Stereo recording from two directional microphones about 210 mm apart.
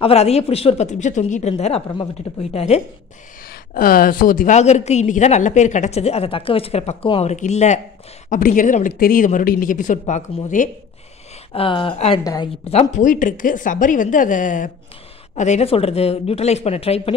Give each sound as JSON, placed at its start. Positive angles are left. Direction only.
{"t": 0.0, "sound": "a woman's voice", "side_deg": 30}
{"t": 3.4, "sound": "a woman's voice", "side_deg": 45}
{"t": 11.5, "sound": "speech", "side_deg": 25}
{"t": 12.9, "sound": "a woman's voice", "side_deg": 40}